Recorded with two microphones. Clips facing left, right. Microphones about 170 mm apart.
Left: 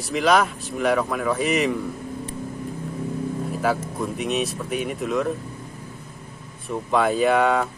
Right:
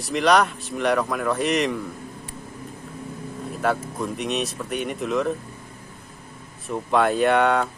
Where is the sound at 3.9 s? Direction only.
Centre (ahead or behind).